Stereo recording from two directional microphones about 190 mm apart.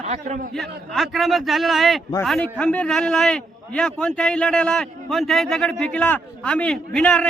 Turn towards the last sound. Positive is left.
turn(degrees=5)  # may be behind; listen again after turning